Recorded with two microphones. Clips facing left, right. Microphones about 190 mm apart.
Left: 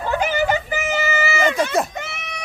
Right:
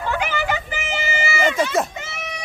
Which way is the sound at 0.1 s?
40° left (ahead or behind).